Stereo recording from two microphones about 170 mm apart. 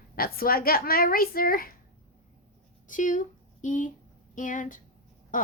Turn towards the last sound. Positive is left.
turn(degrees=50)  # may be behind; listen again after turning